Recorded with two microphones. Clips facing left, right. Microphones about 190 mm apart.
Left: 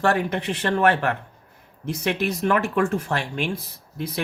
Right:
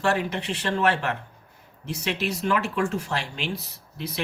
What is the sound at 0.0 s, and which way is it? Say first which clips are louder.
Speech: left 3 dB; 55° left (ahead or behind).